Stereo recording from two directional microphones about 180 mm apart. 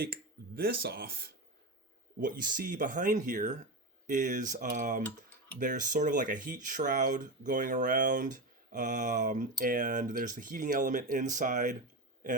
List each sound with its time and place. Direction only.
0.0 s speech: 60° right (ahead or behind)